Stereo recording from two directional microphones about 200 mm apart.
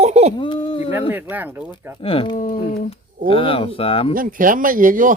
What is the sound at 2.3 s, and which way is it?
Speech, 45° left (ahead or behind).